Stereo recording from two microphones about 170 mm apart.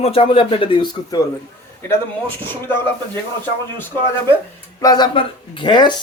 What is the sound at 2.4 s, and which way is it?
Speech, 10° left (ahead or behind).